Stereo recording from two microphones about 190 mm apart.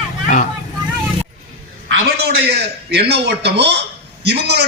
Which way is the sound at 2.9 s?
65° right (ahead or behind).